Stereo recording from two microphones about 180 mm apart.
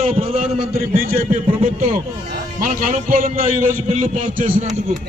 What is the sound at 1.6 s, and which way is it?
A man's voice, 50° right (ahead or behind).